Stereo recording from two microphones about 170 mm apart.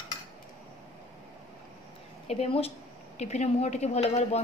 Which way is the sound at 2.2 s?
40° left (ahead or behind).